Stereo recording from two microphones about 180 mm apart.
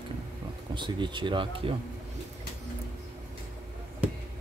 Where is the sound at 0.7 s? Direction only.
25° right (ahead or behind).